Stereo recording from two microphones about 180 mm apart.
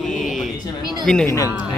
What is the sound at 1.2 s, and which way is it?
Speech, 20° left (ahead or behind).